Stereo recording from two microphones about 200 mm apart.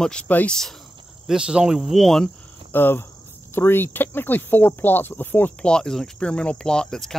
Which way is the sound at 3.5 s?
10° left (ahead or behind).